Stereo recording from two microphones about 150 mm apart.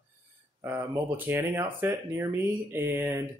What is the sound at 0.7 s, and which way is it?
Speech, 15° right (ahead or behind).